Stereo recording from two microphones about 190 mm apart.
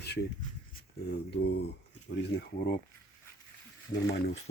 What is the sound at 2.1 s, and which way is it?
Speech, 65° left (ahead or behind).